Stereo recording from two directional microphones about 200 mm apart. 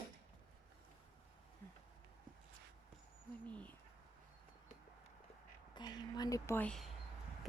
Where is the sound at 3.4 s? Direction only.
5° left (ahead or behind).